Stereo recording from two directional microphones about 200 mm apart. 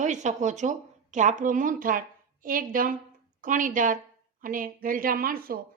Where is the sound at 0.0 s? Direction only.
35° right (ahead or behind).